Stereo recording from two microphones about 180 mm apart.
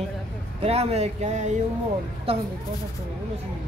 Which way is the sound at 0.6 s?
35° right (ahead or behind).